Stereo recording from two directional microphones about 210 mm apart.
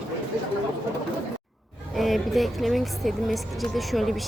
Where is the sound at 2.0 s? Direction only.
Centre (ahead or behind).